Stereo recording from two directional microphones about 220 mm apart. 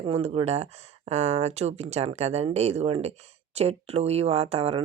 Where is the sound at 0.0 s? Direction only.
25° right (ahead or behind).